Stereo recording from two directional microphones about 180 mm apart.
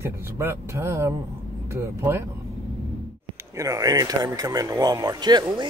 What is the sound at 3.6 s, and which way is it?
Speech, 20° right (ahead or behind).